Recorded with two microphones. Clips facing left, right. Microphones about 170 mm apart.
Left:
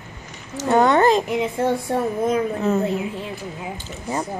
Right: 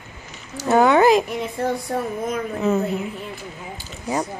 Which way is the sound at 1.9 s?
30° left (ahead or behind).